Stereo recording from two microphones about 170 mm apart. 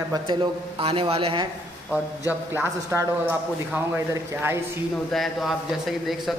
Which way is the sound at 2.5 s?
15° right (ahead or behind).